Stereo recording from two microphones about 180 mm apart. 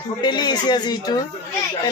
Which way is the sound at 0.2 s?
25° left (ahead or behind).